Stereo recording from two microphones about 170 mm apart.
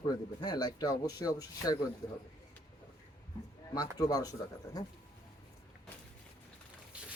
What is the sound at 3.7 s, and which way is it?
Speech, 20° left (ahead or behind).